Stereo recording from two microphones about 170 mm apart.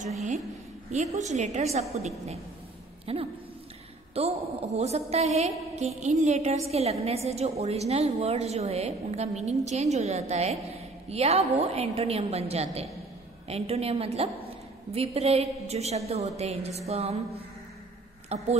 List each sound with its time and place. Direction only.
0.9 s a woman's voice: 45° right (ahead or behind)
18.3 s a woman's voice: 40° right (ahead or behind)